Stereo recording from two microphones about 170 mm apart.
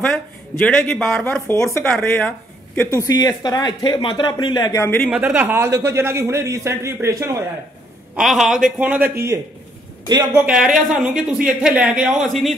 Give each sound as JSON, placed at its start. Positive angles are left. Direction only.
{"t": 0.7, "sound": "speech", "side_deg": 5}
{"t": 2.9, "sound": "speech", "side_deg": 20}
{"t": 5.1, "sound": "a man's voice", "side_deg": -10}
{"t": 8.2, "sound": "speech", "side_deg": 0}
{"t": 10.3, "sound": "speech", "side_deg": -5}